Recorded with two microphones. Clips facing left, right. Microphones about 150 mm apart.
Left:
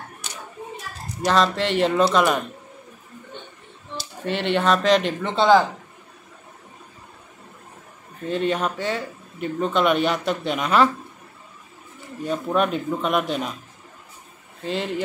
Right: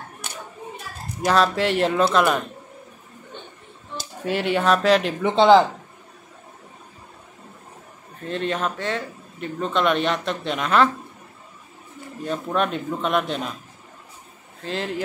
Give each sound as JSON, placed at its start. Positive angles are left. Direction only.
{"t": 0.2, "sound": "a sound", "side_deg": -55}
{"t": 1.2, "sound": "speech", "side_deg": -5}
{"t": 4.2, "sound": "speech", "side_deg": -5}
{"t": 5.2, "sound": "speech", "side_deg": -20}
{"t": 8.3, "sound": "speech", "side_deg": 0}
{"t": 12.3, "sound": "speech", "side_deg": 5}
{"t": 14.6, "sound": "speech", "side_deg": 0}